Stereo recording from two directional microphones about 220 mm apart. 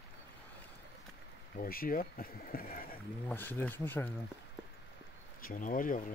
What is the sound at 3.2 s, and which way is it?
Speech, 10° left (ahead or behind).